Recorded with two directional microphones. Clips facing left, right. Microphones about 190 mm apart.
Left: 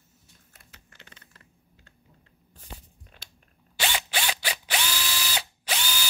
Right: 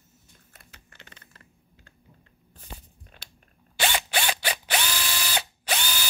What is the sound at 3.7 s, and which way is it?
Drill, 50° right (ahead or behind).